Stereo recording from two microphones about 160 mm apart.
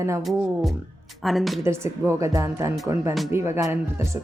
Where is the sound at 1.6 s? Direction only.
15° right (ahead or behind).